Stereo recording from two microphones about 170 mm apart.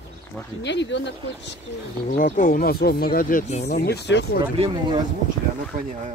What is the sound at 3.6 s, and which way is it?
Speech, 70° left (ahead or behind).